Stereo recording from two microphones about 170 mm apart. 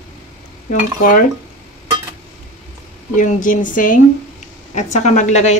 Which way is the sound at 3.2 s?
50° left (ahead or behind).